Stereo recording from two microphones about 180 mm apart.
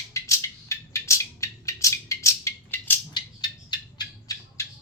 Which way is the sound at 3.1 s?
25° left (ahead or behind).